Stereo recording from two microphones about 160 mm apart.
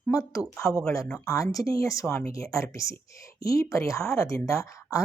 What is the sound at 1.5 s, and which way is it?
Speech, 20° left (ahead or behind).